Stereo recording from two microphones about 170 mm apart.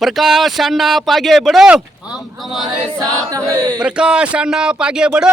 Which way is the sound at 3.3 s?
20° right (ahead or behind).